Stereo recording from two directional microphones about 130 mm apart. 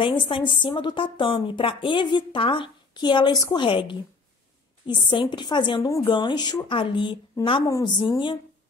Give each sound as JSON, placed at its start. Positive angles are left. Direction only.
{"t": 0.0, "sound": "a woman's voice", "side_deg": 40}
{"t": 7.6, "sound": "a woman's voice", "side_deg": 25}
{"t": 8.1, "sound": "a woman's voice", "side_deg": 40}